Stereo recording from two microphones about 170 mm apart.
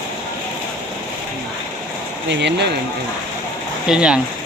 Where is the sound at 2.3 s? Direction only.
90° right.